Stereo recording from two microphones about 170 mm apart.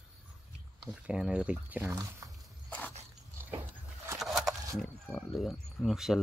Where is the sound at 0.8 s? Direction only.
5° right (ahead or behind).